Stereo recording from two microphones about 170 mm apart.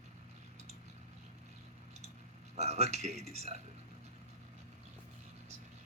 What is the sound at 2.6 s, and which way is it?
Speech, 40° right (ahead or behind).